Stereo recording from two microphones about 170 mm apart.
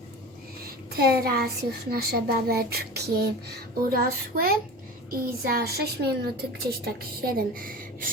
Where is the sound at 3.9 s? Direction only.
60° right (ahead or behind).